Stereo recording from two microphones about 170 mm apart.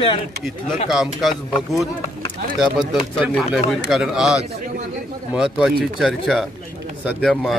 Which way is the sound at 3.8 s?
Centre (ahead or behind).